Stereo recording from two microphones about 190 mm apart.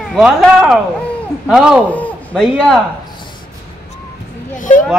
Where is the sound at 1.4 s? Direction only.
Centre (ahead or behind).